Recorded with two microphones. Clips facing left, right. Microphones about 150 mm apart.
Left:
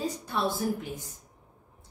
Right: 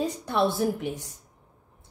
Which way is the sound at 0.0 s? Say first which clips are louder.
Right 5 dB; 65° right (ahead or behind).